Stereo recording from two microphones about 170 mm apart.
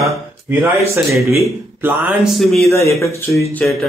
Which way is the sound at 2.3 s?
Centre (ahead or behind).